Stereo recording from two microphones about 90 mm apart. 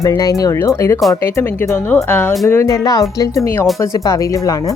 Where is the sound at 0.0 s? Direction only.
40° left (ahead or behind); by 2.3 s 20° left (ahead or behind).